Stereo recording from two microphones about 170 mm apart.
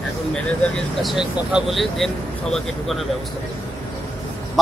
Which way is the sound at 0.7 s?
Centre (ahead or behind).